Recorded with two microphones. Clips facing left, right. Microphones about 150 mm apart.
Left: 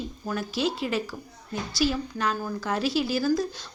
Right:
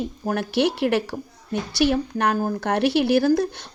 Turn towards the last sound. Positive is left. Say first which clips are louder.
# right 6 dB
turn(degrees=-65)  # may be behind; listen again after turning